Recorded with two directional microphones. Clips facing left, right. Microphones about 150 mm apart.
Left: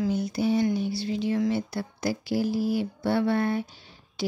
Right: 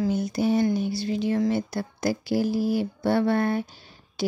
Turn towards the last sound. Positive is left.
turn(degrees=-45)  # may be behind; listen again after turning